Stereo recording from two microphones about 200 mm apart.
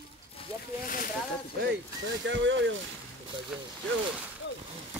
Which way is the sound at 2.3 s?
65° right (ahead or behind).